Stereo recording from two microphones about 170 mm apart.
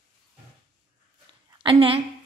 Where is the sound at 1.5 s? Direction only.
30° right (ahead or behind).